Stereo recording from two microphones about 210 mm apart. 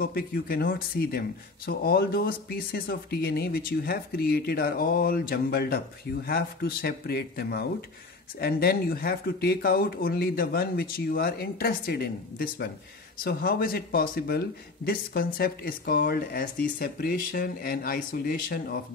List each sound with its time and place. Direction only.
0.0 s speech: 45° left (ahead or behind)